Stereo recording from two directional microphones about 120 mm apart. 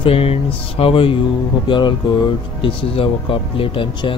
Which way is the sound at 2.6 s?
50° left (ahead or behind).